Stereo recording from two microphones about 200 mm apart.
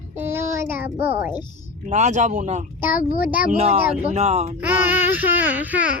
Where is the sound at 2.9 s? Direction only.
45° left (ahead or behind).